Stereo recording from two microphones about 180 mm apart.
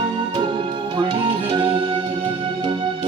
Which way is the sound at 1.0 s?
25° right (ahead or behind).